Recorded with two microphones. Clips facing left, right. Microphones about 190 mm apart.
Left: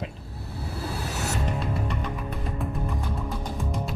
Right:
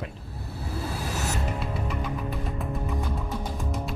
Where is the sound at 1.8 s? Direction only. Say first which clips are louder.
Even; centre (ahead or behind).